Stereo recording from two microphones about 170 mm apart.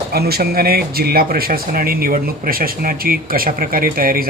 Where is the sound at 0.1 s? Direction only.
65° right (ahead or behind).